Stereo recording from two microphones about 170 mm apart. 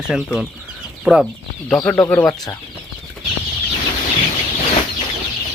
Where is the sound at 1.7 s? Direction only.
5° left (ahead or behind).